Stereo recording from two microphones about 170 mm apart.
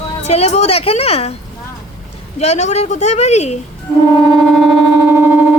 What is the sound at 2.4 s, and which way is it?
A woman's voice, 40° left (ahead or behind).